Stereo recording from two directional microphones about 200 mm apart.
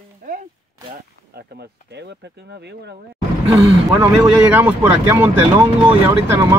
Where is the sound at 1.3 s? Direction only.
55° right (ahead or behind).